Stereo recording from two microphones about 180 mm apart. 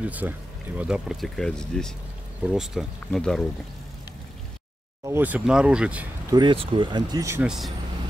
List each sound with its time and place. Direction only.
0.0 s speech: 10° right (ahead or behind)
5.0 s speech: 10° right (ahead or behind)
6.3 s speech: 30° right (ahead or behind)
7.4 s speech: centre (ahead or behind)